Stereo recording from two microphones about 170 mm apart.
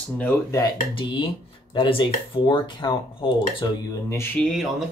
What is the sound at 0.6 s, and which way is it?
Speech, 30° left (ahead or behind).